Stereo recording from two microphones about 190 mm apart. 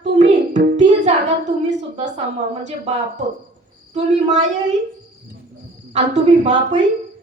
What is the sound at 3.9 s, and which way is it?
Speech, 35° right (ahead or behind).